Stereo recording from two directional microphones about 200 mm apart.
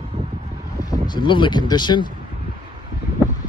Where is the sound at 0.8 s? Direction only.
20° left (ahead or behind).